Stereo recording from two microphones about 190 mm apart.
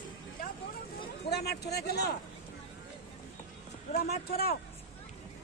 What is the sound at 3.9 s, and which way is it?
Speech, 55° left (ahead or behind).